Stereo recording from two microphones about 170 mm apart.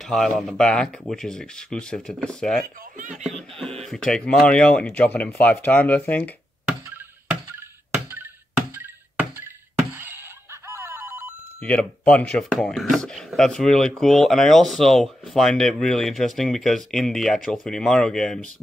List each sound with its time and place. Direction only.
0.0 s speech: centre (ahead or behind)
3.0 s speech: 50° right (ahead or behind)
3.3 s speech: centre (ahead or behind)
7.9 s music: 10° right (ahead or behind)
8.7 s a sound: 10° right (ahead or behind)
9.9 s telephone bell ringing: 15° right (ahead or behind)
11.6 s speech: 5° left (ahead or behind)